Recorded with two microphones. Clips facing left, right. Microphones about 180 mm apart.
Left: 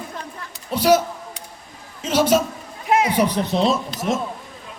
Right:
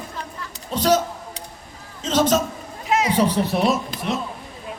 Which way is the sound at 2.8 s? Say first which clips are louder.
Left 2 dB; 55° left (ahead or behind).